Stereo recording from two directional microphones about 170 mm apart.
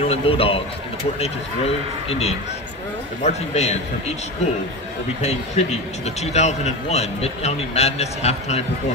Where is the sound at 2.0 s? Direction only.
35° left (ahead or behind).